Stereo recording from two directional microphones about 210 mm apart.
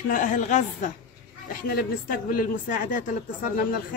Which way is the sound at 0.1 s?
40° left (ahead or behind).